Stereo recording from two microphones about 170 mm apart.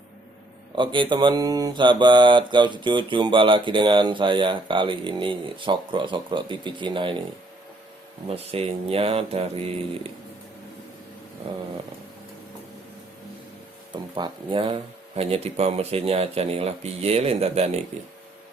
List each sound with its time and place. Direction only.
0.8 s mantra: 30° right (ahead or behind)
8.3 s speech: 35° right (ahead or behind)
13.9 s speech: 30° right (ahead or behind)